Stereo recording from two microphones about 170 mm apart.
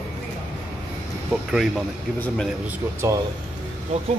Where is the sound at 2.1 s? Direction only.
10° left (ahead or behind).